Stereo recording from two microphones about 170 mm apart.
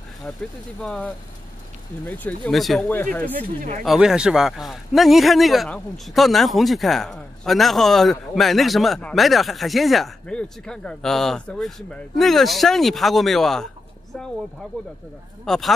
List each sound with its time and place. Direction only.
0.8 s a man's voice: 5° left (ahead or behind)
3.4 s speech: 50° right (ahead or behind)
3.8 s a man's voice: centre (ahead or behind)
15.4 s a man's voice: centre (ahead or behind)